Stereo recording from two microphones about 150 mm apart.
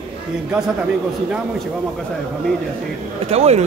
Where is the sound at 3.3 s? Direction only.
45° right (ahead or behind).